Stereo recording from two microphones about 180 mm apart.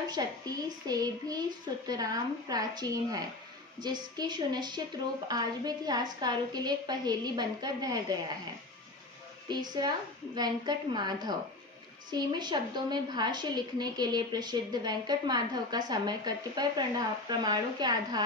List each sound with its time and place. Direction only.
0.1 s a woman's voice: 20° right (ahead or behind)
9.5 s a woman's voice: 25° right (ahead or behind)